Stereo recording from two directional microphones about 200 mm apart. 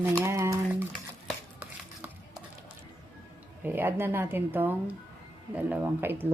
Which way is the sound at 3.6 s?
10° right (ahead or behind).